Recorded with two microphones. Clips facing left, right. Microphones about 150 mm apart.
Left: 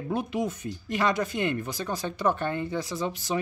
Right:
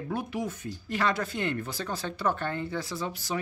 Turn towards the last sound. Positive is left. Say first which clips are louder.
# left 3 dB
turn(degrees=20)  # may be behind; listen again after turning